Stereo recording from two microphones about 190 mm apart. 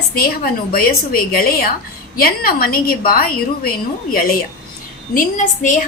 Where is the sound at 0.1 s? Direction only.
50° left (ahead or behind).